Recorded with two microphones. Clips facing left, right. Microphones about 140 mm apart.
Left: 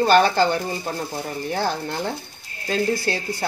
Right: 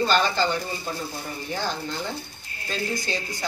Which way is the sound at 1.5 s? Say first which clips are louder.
Left 4 dB; 60° left (ahead or behind).